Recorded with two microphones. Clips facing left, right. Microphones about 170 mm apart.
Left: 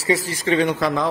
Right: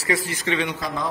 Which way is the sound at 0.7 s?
75° left (ahead or behind).